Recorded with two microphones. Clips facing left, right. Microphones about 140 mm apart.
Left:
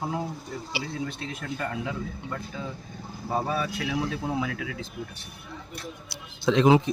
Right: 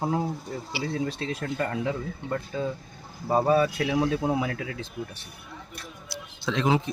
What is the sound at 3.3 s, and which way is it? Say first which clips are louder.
Speech: right 7 dB; 45° right (ahead or behind).